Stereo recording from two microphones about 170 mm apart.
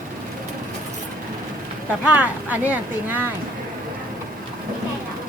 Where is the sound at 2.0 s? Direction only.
10° right (ahead or behind).